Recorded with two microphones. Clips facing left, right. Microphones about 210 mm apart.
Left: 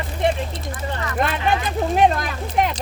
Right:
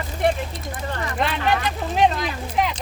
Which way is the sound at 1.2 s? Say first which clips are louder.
Left 2 dB; 50° left (ahead or behind).